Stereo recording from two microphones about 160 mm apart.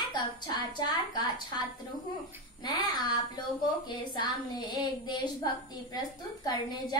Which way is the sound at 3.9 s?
30° left (ahead or behind).